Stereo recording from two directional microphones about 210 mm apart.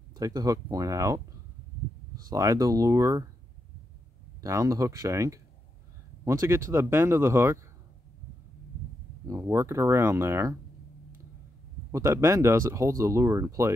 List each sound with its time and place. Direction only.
0.1 s speech: 15° right (ahead or behind)
2.2 s speech: 15° right (ahead or behind)
4.4 s speech: 15° right (ahead or behind)
9.3 s speech: 15° right (ahead or behind)
11.9 s speech: 15° right (ahead or behind)